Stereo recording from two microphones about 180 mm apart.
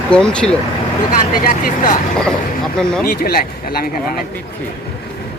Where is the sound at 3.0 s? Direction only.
55° left (ahead or behind).